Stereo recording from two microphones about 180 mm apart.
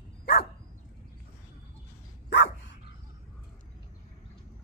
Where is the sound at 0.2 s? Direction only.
65° left (ahead or behind).